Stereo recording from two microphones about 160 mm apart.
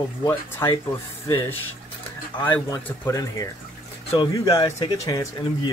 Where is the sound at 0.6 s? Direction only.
20° left (ahead or behind).